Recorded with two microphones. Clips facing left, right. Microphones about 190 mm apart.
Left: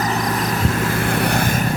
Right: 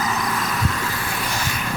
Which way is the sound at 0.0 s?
40° left (ahead or behind).